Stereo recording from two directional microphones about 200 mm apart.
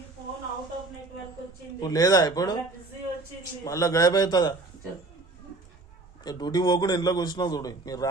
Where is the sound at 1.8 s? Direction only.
15° left (ahead or behind).